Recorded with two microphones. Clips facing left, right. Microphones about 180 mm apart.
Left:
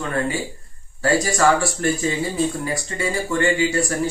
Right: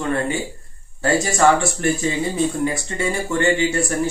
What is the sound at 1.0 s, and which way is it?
Speech, 25° right (ahead or behind).